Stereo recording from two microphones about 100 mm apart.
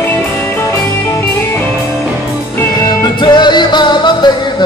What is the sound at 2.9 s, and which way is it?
Music, 50° left (ahead or behind).